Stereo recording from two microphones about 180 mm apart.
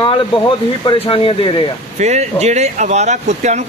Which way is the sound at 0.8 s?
30° left (ahead or behind).